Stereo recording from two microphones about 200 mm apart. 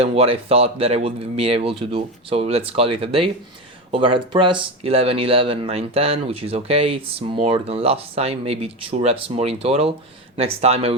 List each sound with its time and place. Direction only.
0.0 s speech: 30° right (ahead or behind)